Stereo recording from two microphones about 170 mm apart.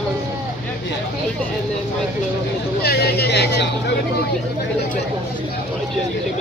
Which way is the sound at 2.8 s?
70° left (ahead or behind).